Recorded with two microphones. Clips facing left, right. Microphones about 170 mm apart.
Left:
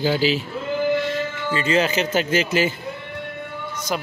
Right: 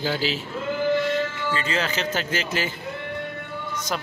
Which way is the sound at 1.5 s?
15° left (ahead or behind).